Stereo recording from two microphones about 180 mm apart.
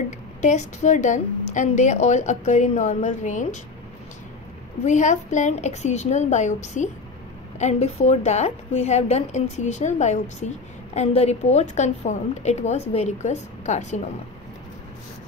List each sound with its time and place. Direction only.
0.4 s a woman's voice: 40° left (ahead or behind)
4.8 s a woman's voice: 40° left (ahead or behind)